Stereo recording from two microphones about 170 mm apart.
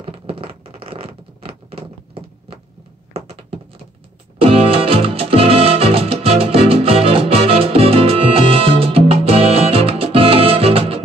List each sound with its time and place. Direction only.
0.0 s scratch: 30° right (ahead or behind)
4.4 s music: 35° right (ahead or behind)